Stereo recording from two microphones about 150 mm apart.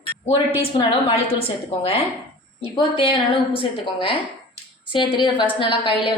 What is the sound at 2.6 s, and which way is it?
A woman's voice, 35° left (ahead or behind).